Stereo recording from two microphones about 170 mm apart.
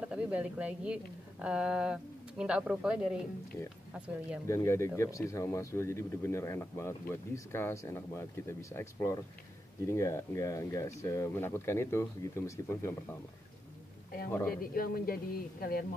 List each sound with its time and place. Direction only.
0.1 s a woman's voice: 5° right (ahead or behind)
4.5 s speech: 15° left (ahead or behind)
14.5 s speech: 60° left (ahead or behind)